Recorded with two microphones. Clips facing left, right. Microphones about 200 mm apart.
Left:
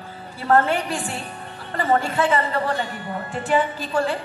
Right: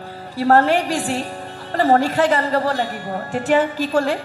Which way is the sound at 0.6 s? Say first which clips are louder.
Right 5 dB; 85° right.